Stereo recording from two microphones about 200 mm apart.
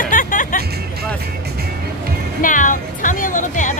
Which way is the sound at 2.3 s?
40° left (ahead or behind).